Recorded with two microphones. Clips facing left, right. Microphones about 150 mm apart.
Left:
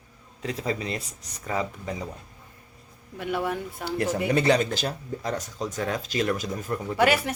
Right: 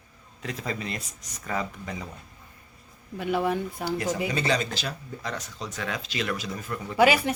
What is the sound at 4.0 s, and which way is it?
Speech, 60° left (ahead or behind).